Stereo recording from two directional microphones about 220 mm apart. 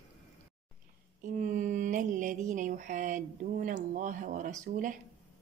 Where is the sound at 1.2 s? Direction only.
35° right (ahead or behind).